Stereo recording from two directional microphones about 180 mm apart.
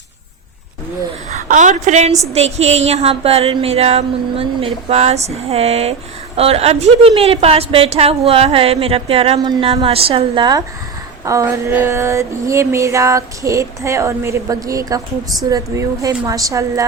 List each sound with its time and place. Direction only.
1.3 s a woman's voice: 45° right (ahead or behind)
2.3 s a sound: 35° right (ahead or behind); by 15.0 s 20° right (ahead or behind)
15.4 s a woman's voice: 20° right (ahead or behind)